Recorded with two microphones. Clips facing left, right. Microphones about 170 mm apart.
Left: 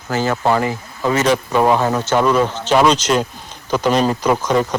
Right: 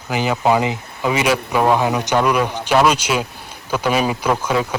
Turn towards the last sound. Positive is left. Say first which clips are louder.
# left 3 dB
turn(degrees=-10)  # may be behind; listen again after turning